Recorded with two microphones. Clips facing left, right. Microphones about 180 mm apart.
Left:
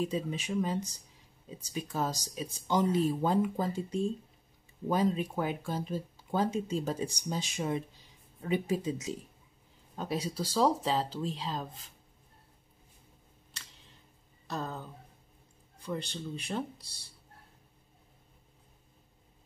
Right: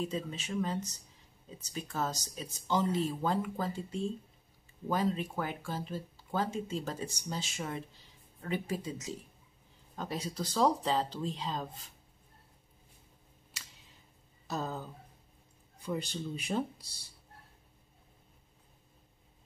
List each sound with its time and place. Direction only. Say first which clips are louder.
0.0 s speech: left 3 dB; 10° left (ahead or behind)
14.5 s speech: right 1 dB; 5° right (ahead or behind)